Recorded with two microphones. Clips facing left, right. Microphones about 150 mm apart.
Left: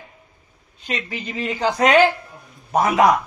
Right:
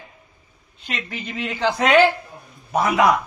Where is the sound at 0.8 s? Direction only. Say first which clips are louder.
Left 3 dB; 35° left (ahead or behind).